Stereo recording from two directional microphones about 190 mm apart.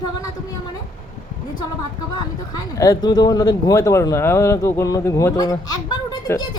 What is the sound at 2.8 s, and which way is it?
Speech, 20° left (ahead or behind).